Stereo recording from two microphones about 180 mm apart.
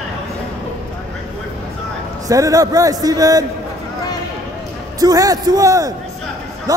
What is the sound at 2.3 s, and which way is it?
A man's voice, 20° right (ahead or behind).